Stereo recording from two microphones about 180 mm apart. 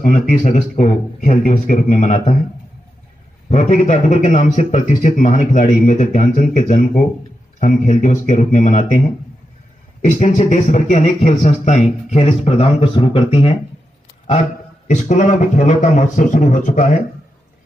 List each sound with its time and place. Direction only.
0.0 s a man's voice: 45° left (ahead or behind)
3.4 s a man's voice: 40° left (ahead or behind)
14.9 s speech: 40° left (ahead or behind)